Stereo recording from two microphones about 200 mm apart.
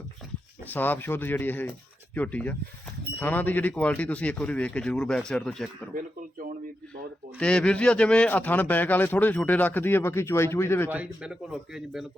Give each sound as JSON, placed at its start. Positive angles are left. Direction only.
{"t": 0.7, "sound": "speech", "side_deg": 10}
{"t": 5.9, "sound": "a sound", "side_deg": -45}
{"t": 7.3, "sound": "speech", "side_deg": 5}
{"t": 10.8, "sound": "speech", "side_deg": -5}